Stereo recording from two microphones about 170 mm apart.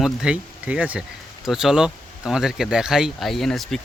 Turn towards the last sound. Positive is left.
turn(degrees=0)  # may be behind; listen again after turning